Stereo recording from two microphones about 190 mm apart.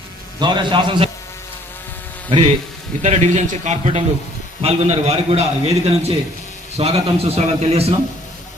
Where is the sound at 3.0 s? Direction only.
35° right (ahead or behind).